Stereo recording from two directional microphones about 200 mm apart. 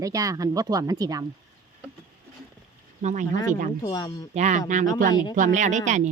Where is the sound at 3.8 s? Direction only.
20° left (ahead or behind).